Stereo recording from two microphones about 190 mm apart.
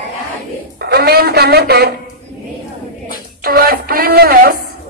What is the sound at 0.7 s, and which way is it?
Speech, 60° right (ahead or behind).